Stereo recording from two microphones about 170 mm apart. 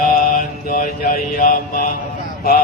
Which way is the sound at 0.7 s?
60° left (ahead or behind).